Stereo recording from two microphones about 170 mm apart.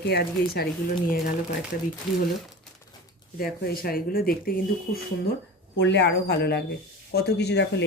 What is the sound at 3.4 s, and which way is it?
Speech, 60° left (ahead or behind).